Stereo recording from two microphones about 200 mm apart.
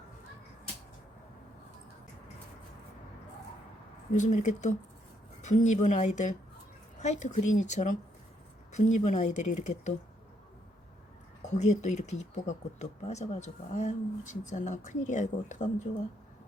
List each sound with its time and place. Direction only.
4.1 s speech: 40° left (ahead or behind)
11.4 s speech: 35° left (ahead or behind)